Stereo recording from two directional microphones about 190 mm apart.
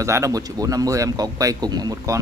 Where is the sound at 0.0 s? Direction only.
15° right (ahead or behind).